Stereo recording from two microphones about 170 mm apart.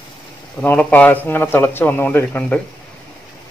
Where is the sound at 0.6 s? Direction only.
10° left (ahead or behind).